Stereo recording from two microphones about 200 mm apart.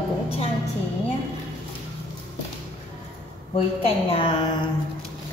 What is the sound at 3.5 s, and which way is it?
A woman's voice, 30° left (ahead or behind).